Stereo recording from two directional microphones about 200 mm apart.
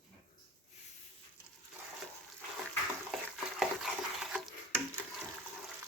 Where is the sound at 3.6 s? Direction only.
Centre (ahead or behind).